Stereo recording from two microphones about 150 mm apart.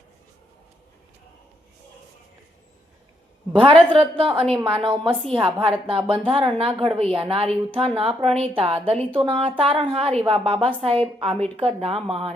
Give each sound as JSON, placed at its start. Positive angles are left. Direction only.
{"t": 3.5, "sound": "a woman's voice", "side_deg": -35}